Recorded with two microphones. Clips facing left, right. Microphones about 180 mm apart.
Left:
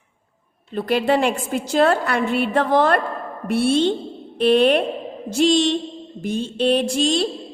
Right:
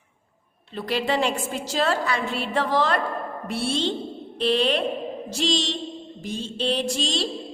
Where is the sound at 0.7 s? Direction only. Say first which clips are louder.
Left 6 dB; 55° left (ahead or behind).